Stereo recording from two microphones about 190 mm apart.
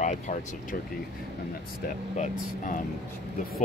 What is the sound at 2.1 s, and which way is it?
Speech, 35° left (ahead or behind).